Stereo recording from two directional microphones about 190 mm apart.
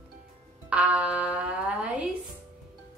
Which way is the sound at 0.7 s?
5° right (ahead or behind).